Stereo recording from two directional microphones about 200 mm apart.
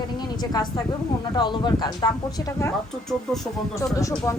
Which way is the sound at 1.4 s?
20° left (ahead or behind).